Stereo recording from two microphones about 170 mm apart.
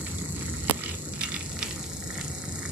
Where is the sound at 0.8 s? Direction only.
5° right (ahead or behind).